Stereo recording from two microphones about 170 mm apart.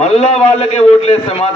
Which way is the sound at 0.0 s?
40° left (ahead or behind).